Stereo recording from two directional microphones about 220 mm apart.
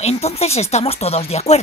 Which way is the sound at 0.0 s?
30° left (ahead or behind).